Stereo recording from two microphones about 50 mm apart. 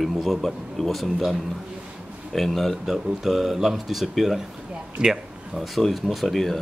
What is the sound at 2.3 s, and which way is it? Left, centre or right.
Speech, centre.